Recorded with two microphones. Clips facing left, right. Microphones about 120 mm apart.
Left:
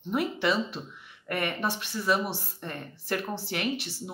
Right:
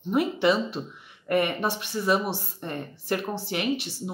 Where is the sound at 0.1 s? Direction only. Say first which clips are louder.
Right 5 dB; 20° right (ahead or behind).